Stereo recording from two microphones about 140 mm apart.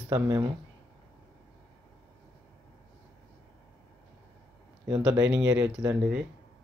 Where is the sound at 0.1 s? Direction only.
30° right (ahead or behind).